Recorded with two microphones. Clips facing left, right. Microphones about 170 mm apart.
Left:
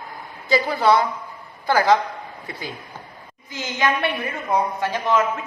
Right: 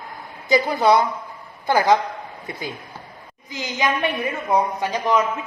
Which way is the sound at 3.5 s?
15° right (ahead or behind).